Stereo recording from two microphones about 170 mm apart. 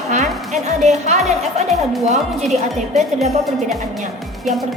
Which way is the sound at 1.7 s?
Centre (ahead or behind).